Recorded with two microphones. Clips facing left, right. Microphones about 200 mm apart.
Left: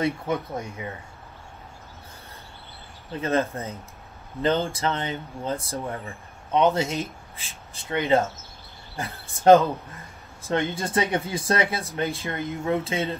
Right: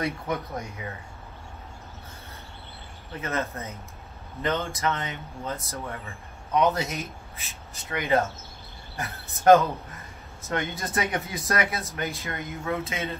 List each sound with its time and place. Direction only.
0.0 s speech: 30° left (ahead or behind)
3.2 s speech: 30° left (ahead or behind)